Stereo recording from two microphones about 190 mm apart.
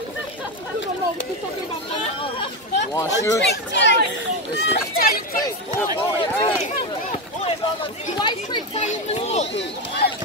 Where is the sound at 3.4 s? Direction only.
65° left (ahead or behind).